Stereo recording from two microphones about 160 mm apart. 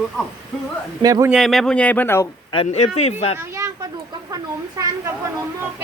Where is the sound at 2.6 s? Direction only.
45° left (ahead or behind).